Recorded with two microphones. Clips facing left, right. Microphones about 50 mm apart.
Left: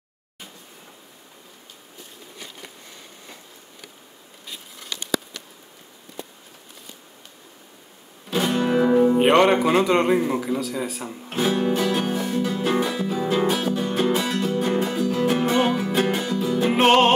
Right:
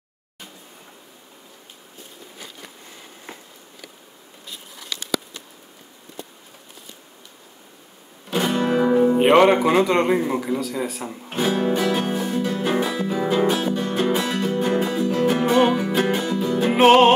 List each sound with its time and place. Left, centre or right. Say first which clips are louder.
8.3 s speech: right 1 dB; centre
11.8 s music: right 1 dB; centre